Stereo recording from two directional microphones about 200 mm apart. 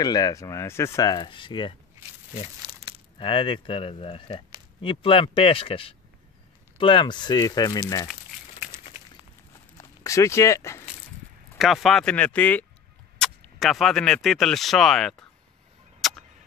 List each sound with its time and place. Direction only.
0.0 s speech: 20° left (ahead or behind)
2.6 s a sound: 25° right (ahead or behind)
3.2 s speech: 25° left (ahead or behind)
9.8 s speech: 15° left (ahead or behind)
11.5 s speech: centre (ahead or behind)
16.0 s tick-tock: centre (ahead or behind)